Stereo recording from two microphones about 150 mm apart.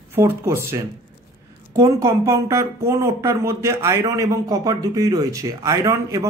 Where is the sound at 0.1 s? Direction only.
15° right (ahead or behind).